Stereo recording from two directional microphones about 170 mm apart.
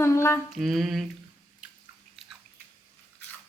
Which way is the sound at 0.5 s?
Centre (ahead or behind).